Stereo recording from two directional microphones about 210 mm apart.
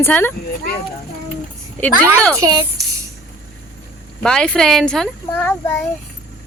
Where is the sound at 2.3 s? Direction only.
15° right (ahead or behind).